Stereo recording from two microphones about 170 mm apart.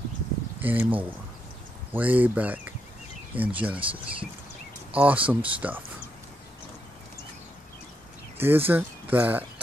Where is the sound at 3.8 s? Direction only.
30° right (ahead or behind).